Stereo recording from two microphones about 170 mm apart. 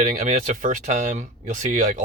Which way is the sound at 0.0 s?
45° right (ahead or behind).